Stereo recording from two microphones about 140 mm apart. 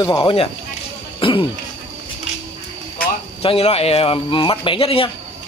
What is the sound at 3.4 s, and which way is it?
Speech, 45° left (ahead or behind).